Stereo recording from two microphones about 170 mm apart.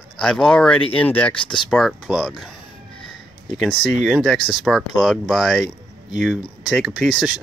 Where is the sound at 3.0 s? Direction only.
Centre (ahead or behind).